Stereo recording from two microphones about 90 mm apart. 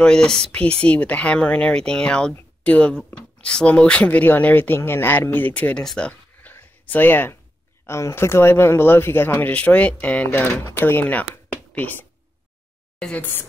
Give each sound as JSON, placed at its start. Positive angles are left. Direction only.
{"t": 0.0, "sound": "speech", "side_deg": 10}
{"t": 5.9, "sound": "a sound", "side_deg": 10}
{"t": 7.8, "sound": "speech", "side_deg": 30}